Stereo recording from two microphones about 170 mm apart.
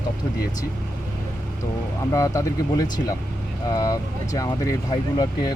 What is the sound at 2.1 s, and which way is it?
Speech, 20° left (ahead or behind).